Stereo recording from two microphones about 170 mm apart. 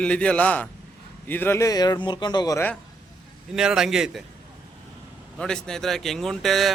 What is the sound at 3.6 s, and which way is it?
Speech, 5° right (ahead or behind).